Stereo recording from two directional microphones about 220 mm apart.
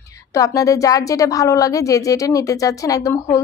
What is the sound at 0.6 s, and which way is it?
Speech, 15° left (ahead or behind).